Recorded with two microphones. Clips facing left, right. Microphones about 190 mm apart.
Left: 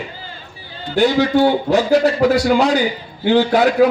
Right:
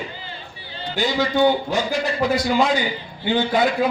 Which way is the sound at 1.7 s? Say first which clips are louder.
Left 9 dB; 70° left (ahead or behind).